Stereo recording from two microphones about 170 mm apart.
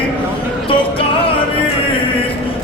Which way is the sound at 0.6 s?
35° left (ahead or behind).